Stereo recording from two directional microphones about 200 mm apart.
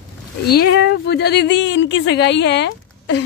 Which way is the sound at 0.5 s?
55° left (ahead or behind).